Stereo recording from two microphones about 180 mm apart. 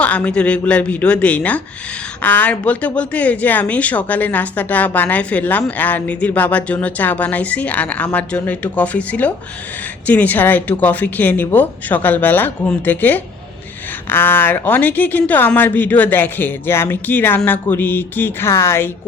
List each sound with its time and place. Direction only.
0.0 s speech: 10° left (ahead or behind)